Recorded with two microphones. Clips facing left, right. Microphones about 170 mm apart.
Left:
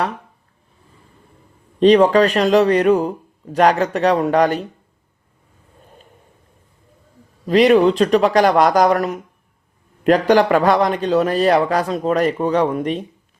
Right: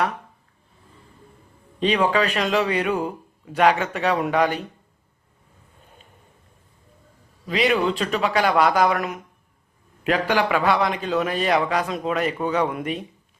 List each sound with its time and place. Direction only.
1.8 s a man's voice: 40° left (ahead or behind)
7.4 s a man's voice: 40° left (ahead or behind)